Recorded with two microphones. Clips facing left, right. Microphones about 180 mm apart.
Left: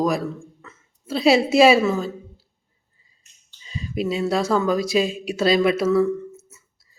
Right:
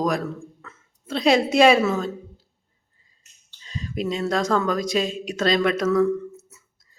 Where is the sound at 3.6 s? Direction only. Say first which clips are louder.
Left 2 dB; 10° left (ahead or behind).